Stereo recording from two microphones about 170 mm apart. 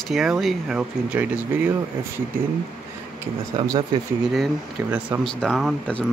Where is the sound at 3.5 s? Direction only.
25° right (ahead or behind).